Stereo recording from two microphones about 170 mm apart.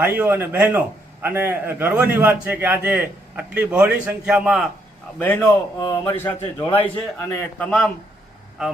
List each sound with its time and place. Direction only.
0.0 s a man's voice: 10° right (ahead or behind)
5.2 s a man's voice: 10° left (ahead or behind)
5.8 s speech: 20° left (ahead or behind)
6.8 s a man's voice: 10° left (ahead or behind)